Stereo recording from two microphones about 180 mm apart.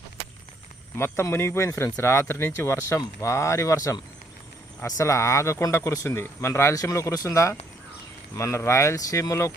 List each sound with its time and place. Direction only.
0.9 s speech: 15° left (ahead or behind)